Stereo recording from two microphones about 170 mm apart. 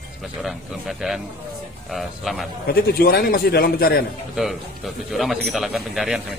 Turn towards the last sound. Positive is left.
turn(degrees=0)  # may be behind; listen again after turning